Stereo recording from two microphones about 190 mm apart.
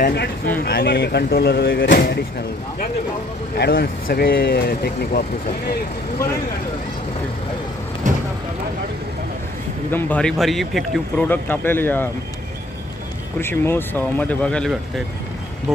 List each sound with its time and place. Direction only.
0.0 s speech: 60° left (ahead or behind)
3.5 s speech: 55° left (ahead or behind)
9.8 s a man's voice: 10° left (ahead or behind)
13.4 s a man's voice: 10° left (ahead or behind)